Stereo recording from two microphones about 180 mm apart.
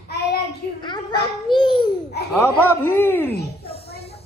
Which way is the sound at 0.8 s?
25° left (ahead or behind).